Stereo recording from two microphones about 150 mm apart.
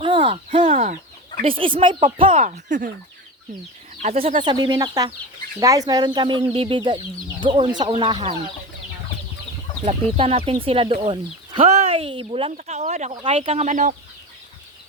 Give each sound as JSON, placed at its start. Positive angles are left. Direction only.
{"t": 0.0, "sound": "a sound", "side_deg": -35}
{"t": 1.4, "sound": "speech", "side_deg": -35}
{"t": 2.4, "sound": "speech", "side_deg": -55}
{"t": 4.0, "sound": "speech", "side_deg": -45}
{"t": 4.4, "sound": "speech", "side_deg": -30}
{"t": 9.8, "sound": "speech", "side_deg": -40}
{"t": 12.5, "sound": "speech", "side_deg": -50}
{"t": 13.1, "sound": "speech", "side_deg": -40}